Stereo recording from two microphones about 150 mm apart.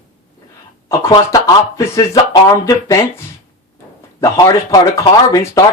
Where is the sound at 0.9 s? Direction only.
20° left (ahead or behind).